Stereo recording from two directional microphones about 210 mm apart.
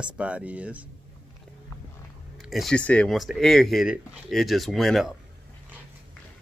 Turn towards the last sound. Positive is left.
turn(degrees=0)  # may be behind; listen again after turning